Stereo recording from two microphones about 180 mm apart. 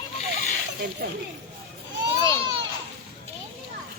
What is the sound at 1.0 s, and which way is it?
Speech, 60° right (ahead or behind).